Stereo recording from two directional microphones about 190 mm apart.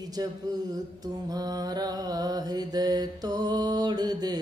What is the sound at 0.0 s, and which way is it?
Mantra, 20° right (ahead or behind).